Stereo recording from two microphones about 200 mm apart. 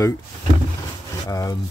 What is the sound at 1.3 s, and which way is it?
Speech, 20° left (ahead or behind).